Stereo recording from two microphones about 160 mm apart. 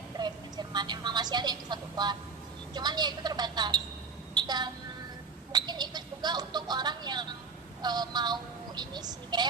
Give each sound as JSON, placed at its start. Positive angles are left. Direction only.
{"t": 0.2, "sound": "a woman's voice", "side_deg": -25}
{"t": 4.4, "sound": "a sound", "side_deg": -25}
{"t": 5.5, "sound": "speech", "side_deg": -25}